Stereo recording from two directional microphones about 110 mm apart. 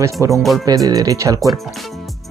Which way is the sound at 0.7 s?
35° right (ahead or behind).